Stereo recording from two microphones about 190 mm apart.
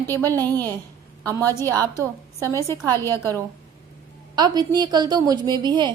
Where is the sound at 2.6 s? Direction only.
15° left (ahead or behind).